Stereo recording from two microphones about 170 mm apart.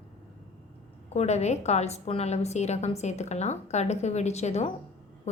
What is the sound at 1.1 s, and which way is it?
A woman's voice, 40° left (ahead or behind).